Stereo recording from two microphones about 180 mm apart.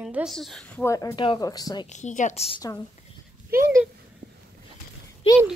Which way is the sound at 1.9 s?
40° left (ahead or behind).